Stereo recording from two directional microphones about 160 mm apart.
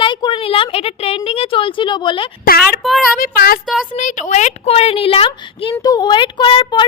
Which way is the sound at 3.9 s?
50° left (ahead or behind).